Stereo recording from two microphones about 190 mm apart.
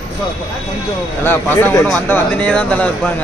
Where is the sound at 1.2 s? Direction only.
10° left (ahead or behind).